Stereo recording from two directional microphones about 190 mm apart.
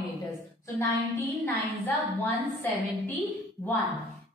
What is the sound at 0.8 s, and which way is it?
A woman's voice, 10° left (ahead or behind).